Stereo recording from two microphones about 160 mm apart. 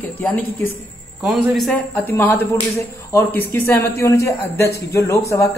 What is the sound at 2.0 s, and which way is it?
A man's voice, 10° left (ahead or behind).